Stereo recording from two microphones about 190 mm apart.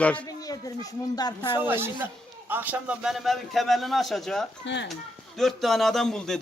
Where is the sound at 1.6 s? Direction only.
10° right (ahead or behind).